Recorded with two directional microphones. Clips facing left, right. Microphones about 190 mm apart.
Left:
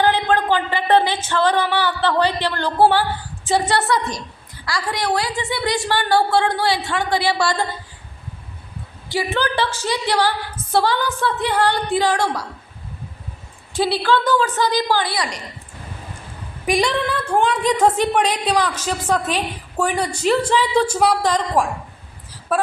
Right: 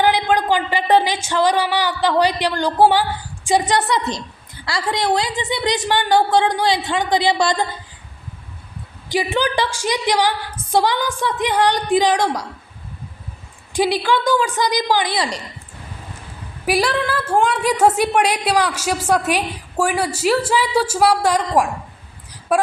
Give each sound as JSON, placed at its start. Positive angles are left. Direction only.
{"t": 0.0, "sound": "a woman's voice", "side_deg": -15}
{"t": 9.0, "sound": "a woman's voice", "side_deg": -15}
{"t": 13.7, "sound": "a woman's voice", "side_deg": -15}
{"t": 16.6, "sound": "a woman's voice", "side_deg": -5}